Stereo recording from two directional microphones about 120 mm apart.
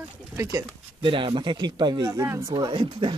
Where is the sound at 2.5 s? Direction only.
45° right (ahead or behind).